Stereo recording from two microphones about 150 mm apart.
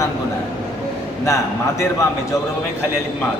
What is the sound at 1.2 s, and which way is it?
Speech, 20° left (ahead or behind).